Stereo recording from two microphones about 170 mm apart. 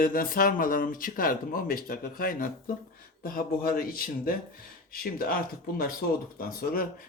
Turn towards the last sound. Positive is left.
turn(degrees=60)  # may be behind; listen again after turning